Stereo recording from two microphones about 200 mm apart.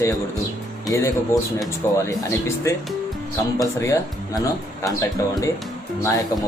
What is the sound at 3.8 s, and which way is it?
Speech, 15° left (ahead or behind).